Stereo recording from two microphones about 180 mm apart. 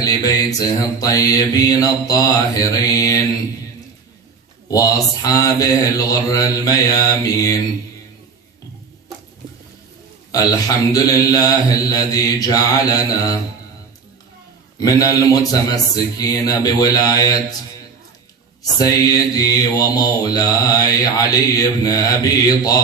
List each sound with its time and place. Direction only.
0.0 s mantra: 20° left (ahead or behind)
4.6 s mantra: 20° left (ahead or behind)
10.3 s mantra: 20° left (ahead or behind)
14.8 s mantra: 20° left (ahead or behind)
18.6 s mantra: 20° left (ahead or behind)